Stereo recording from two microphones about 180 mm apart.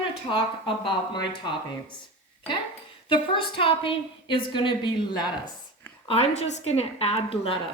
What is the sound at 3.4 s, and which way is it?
A woman's voice, 30° left (ahead or behind).